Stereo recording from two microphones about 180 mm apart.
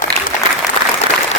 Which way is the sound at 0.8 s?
25° right (ahead or behind).